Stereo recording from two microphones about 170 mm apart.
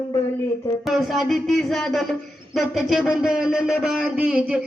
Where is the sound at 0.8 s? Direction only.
Centre (ahead or behind).